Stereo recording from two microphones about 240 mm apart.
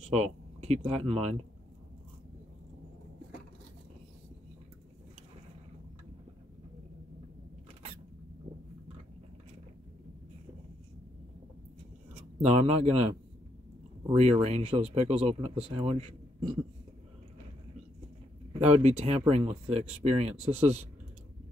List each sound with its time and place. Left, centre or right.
0.1 s speech: right
12.1 s speech: right
18.6 s speech: right